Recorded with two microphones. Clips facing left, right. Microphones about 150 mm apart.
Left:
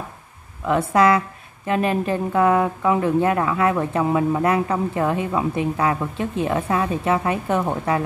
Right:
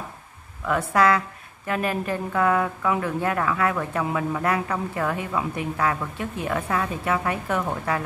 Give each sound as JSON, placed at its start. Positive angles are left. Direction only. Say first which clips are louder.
{"t": 0.7, "sound": "speech", "louder": "left 4 dB", "side_deg": 20}